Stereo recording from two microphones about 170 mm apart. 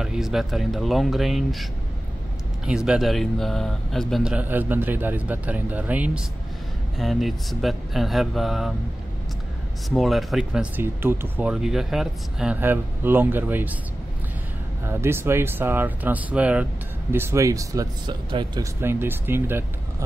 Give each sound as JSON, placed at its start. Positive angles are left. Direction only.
{"t": 0.0, "sound": "speech", "side_deg": -5}
{"t": 9.8, "sound": "speech", "side_deg": 0}
{"t": 14.9, "sound": "speech", "side_deg": -15}
{"t": 18.8, "sound": "speech", "side_deg": -15}